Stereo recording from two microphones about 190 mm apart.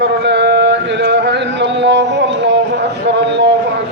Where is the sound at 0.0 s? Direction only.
65° right (ahead or behind).